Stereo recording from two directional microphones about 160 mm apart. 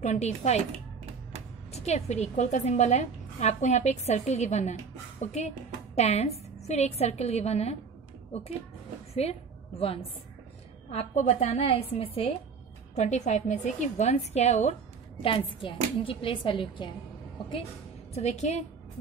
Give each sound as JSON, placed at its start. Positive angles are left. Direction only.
{"t": 0.0, "sound": "a woman's voice", "side_deg": 45}
{"t": 1.7, "sound": "a woman's voice", "side_deg": 45}
{"t": 9.1, "sound": "a sound", "side_deg": 40}
{"t": 10.9, "sound": "a woman's voice", "side_deg": 40}
{"t": 15.2, "sound": "a woman's voice", "side_deg": 35}
{"t": 18.1, "sound": "a woman's voice", "side_deg": 45}